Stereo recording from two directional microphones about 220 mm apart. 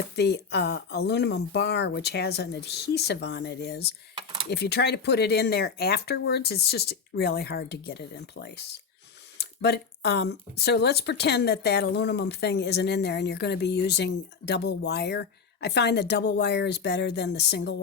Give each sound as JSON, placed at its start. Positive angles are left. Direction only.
{"t": 0.2, "sound": "speech", "side_deg": 50}